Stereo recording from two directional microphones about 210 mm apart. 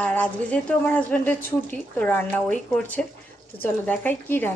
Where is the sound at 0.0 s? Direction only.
5° left (ahead or behind).